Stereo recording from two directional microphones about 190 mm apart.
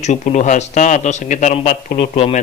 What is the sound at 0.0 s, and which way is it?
A man's voice, 35° left (ahead or behind).